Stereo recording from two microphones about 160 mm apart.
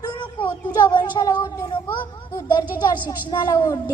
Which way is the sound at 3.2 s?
25° left (ahead or behind).